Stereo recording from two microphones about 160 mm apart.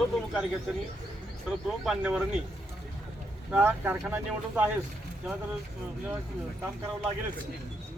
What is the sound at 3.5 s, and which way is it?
Speech, 10° right (ahead or behind).